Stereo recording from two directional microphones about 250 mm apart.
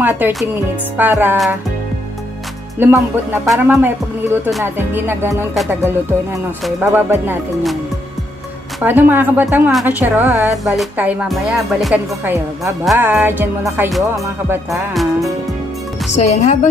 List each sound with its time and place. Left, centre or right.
0.0 s a woman's voice: centre
2.8 s a woman's voice: centre
8.8 s a woman's voice: centre
14.7 s music: centre
16.1 s speech: left